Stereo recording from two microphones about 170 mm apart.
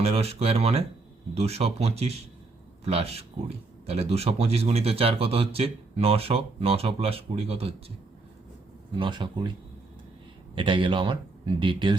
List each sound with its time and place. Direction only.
0.0 s a man's voice: 35° right (ahead or behind)
9.0 s speech: 30° right (ahead or behind)
10.5 s speech: 30° right (ahead or behind)